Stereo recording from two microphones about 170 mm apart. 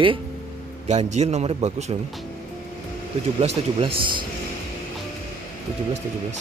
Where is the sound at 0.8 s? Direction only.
40° right (ahead or behind).